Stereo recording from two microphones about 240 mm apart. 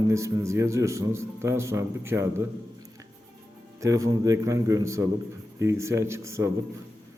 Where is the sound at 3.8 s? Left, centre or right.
Centre.